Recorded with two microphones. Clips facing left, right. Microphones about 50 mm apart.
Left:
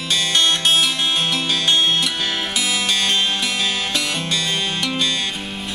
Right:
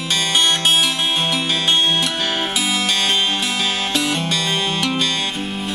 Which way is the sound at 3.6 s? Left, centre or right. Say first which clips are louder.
Right 2 dB; right.